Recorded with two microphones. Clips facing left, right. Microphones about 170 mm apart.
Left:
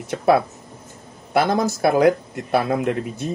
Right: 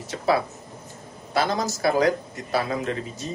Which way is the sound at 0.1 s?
55° left (ahead or behind).